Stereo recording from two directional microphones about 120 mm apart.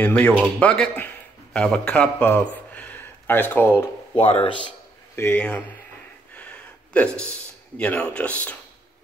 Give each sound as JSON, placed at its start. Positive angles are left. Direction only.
{"t": 0.0, "sound": "a man's voice", "side_deg": 15}
{"t": 4.2, "sound": "speech", "side_deg": 50}
{"t": 5.1, "sound": "speech", "side_deg": 20}
{"t": 6.3, "sound": "a sound", "side_deg": 10}